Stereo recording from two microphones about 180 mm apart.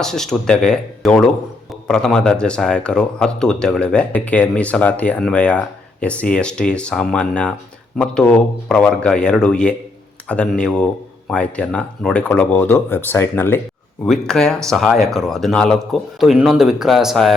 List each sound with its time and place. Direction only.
0.0 s speech: centre (ahead or behind)